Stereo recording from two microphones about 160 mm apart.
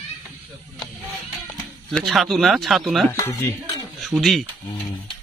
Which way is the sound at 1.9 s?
Centre (ahead or behind).